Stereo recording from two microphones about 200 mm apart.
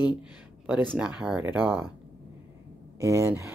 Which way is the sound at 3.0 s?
15° right (ahead or behind).